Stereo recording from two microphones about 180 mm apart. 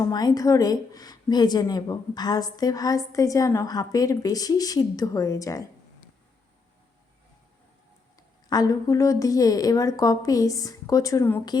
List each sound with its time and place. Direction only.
0.1 s a woman's voice: 20° left (ahead or behind)
8.4 s a woman's voice: 20° left (ahead or behind)